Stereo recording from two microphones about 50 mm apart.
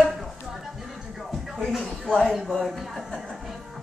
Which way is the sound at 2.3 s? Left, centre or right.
Centre.